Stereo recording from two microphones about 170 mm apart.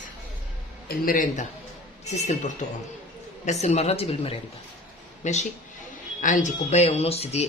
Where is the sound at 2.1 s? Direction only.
40° left (ahead or behind).